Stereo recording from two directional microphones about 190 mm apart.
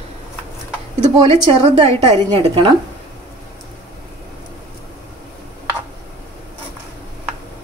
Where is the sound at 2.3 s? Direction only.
30° right (ahead or behind).